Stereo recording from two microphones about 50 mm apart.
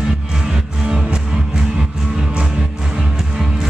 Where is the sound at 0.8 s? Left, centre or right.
Centre.